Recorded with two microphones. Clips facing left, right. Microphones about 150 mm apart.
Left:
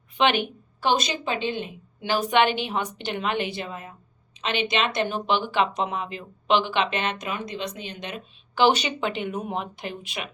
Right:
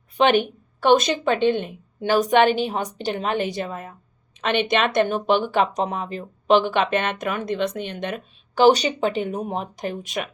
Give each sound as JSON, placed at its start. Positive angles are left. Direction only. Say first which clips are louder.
{"t": 0.2, "sound": "speech", "louder": "right 5 dB", "side_deg": -45}